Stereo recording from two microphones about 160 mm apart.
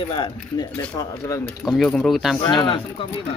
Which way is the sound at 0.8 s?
15° left (ahead or behind).